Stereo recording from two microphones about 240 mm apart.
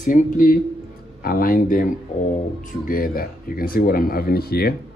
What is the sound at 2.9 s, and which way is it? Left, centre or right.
Speech, left.